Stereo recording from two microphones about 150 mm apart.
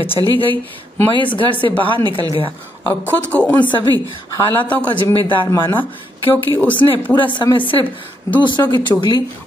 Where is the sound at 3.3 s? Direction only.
10° left (ahead or behind).